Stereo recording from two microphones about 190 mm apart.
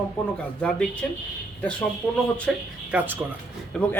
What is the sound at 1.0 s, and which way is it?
A man's voice, 5° left (ahead or behind).